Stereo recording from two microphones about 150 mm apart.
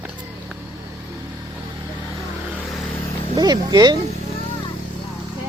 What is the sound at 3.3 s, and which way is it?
Speech, 25° right (ahead or behind).